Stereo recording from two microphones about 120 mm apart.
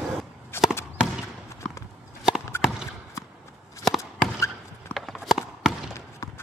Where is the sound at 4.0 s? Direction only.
25° left (ahead or behind).